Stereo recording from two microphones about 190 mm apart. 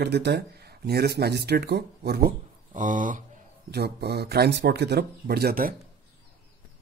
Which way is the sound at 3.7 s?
55° right (ahead or behind).